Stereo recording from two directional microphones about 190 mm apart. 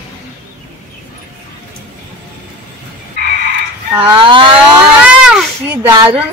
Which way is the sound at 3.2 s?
55° right (ahead or behind).